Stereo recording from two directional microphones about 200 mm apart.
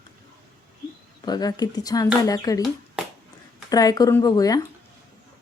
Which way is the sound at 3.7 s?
20° left (ahead or behind).